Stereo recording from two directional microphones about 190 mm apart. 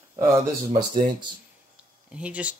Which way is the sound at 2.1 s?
5° right (ahead or behind).